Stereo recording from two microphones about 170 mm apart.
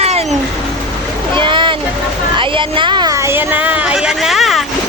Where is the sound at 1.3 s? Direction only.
30° right (ahead or behind).